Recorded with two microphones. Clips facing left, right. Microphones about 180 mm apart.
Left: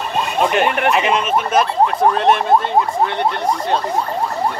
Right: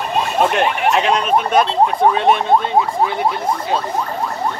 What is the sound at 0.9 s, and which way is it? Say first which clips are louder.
Speech: right 1 dB; 5° left (ahead or behind).